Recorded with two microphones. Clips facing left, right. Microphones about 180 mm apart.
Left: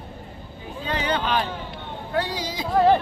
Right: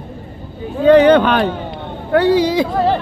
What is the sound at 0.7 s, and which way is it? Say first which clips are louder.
Speech: right 18 dB; 60° right (ahead or behind).